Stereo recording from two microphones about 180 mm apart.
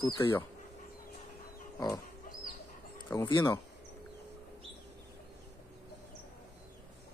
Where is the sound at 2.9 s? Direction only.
20° left (ahead or behind).